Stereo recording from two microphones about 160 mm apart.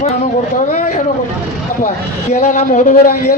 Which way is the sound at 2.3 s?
45° left (ahead or behind).